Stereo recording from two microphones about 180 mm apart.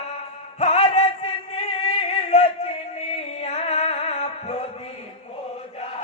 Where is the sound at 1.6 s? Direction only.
35° left (ahead or behind).